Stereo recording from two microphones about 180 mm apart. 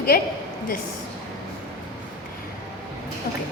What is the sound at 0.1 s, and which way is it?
Speech, 55° left (ahead or behind).